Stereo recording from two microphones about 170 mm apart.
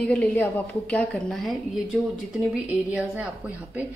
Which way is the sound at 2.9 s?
5° right (ahead or behind).